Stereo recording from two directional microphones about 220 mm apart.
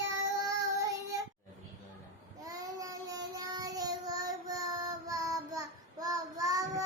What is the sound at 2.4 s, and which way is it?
Child singing, 15° right (ahead or behind).